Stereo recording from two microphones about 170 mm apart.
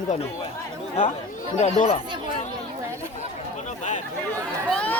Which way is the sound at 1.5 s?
45° left (ahead or behind).